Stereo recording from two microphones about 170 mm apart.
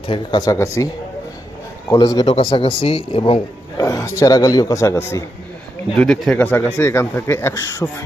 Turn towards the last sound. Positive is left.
turn(degrees=15)  # may be behind; listen again after turning